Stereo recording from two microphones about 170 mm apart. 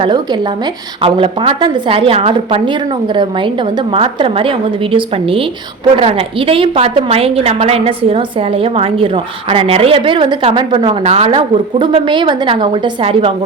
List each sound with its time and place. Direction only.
0.0 s a woman's voice: 25° right (ahead or behind)